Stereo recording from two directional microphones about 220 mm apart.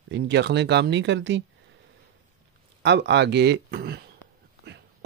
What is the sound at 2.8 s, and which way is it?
Speech, 50° right (ahead or behind).